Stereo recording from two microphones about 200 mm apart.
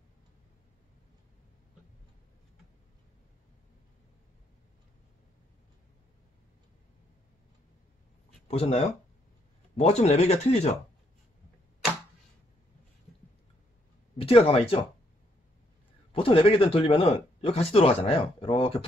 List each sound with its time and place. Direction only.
8.5 s speech: 30° left (ahead or behind)
14.1 s speech: 30° left (ahead or behind)
16.1 s speech: 25° left (ahead or behind)